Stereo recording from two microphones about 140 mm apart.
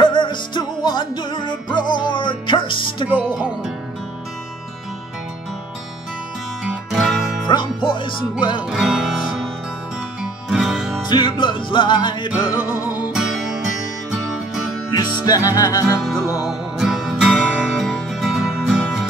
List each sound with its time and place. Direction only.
0.0 s music: 35° left (ahead or behind)
3.3 s music: 5° right (ahead or behind)
6.6 s music: centre (ahead or behind)
7.4 s music: 35° left (ahead or behind)
8.6 s music: 5° right (ahead or behind)
11.1 s music: 35° left (ahead or behind)
13.1 s music: 5° right (ahead or behind)
14.9 s music: 25° left (ahead or behind)
16.0 s music: 5° right (ahead or behind)